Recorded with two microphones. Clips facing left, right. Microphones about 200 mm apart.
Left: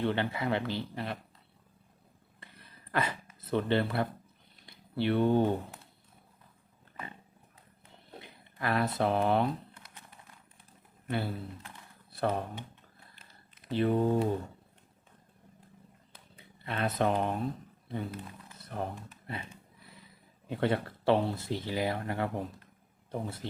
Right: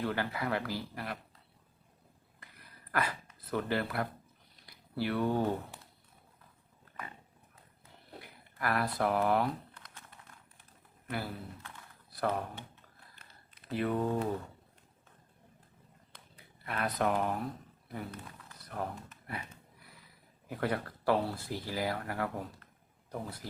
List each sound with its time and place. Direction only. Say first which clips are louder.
0.0 s speech: left 3 dB; 25° left (ahead or behind)
2.4 s a sound: left 2 dB; 25° left (ahead or behind)
3.4 s speech: left 4 dB; 25° left (ahead or behind)
8.2 s speech: left 1 dB; 20° left (ahead or behind)
11.1 s speech: left 4 dB; 25° left (ahead or behind)
13.7 s speech: left 4 dB; 25° left (ahead or behind)
16.4 s speech: left 3 dB; 25° left (ahead or behind)
18.6 s a sound: left 2 dB; 25° left (ahead or behind)
20.5 s speech: left 4 dB; 25° left (ahead or behind)